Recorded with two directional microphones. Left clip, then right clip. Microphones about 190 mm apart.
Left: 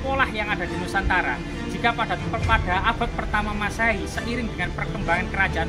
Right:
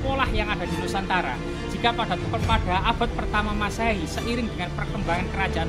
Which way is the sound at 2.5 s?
20° right (ahead or behind).